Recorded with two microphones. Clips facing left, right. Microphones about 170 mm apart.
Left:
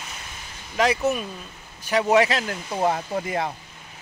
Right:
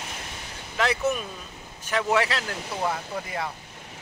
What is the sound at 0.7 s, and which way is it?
Speech, 15° left (ahead or behind).